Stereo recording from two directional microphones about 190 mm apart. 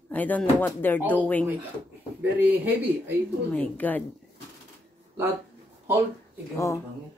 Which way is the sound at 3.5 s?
10° left (ahead or behind).